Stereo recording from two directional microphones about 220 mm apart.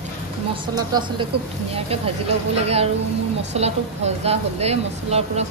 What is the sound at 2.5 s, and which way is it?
Speech, 30° right (ahead or behind).